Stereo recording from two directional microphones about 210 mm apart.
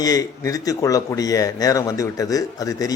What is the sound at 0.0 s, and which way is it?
Speech, 15° left (ahead or behind).